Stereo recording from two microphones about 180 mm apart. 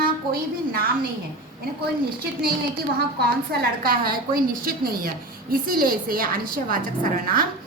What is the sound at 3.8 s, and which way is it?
A woman's voice, 55° right (ahead or behind).